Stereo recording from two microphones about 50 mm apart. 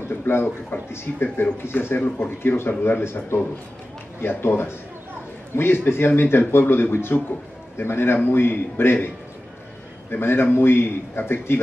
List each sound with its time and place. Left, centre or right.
0.3 s a man's voice: left
10.1 s a man's voice: left